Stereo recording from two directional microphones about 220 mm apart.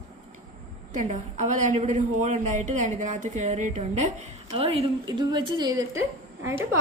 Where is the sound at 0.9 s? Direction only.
35° right (ahead or behind).